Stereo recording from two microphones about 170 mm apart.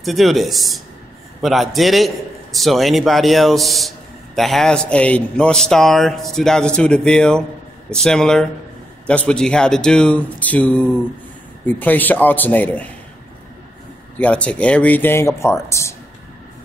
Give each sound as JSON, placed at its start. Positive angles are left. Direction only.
{"t": 0.0, "sound": "speech", "side_deg": 0}
{"t": 14.1, "sound": "speech", "side_deg": 10}